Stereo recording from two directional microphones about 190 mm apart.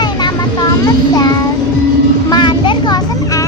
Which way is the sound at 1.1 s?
20° left (ahead or behind).